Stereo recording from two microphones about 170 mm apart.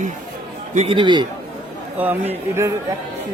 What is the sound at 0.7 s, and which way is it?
Speech, 35° right (ahead or behind).